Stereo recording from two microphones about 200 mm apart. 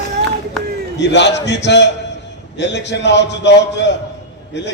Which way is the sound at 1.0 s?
60° left (ahead or behind).